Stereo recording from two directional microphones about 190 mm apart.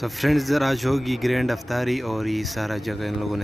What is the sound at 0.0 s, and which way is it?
Speech, centre (ahead or behind).